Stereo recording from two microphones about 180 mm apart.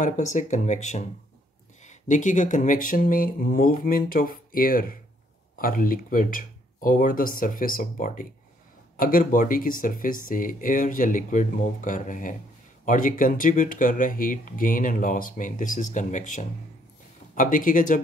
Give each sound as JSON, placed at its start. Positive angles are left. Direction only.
{"t": 0.0, "sound": "speech", "side_deg": 45}